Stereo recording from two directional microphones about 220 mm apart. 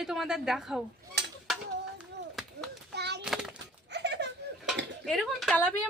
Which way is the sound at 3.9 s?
50° right (ahead or behind).